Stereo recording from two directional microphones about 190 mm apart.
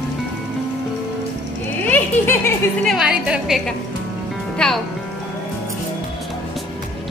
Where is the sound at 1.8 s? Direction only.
10° left (ahead or behind).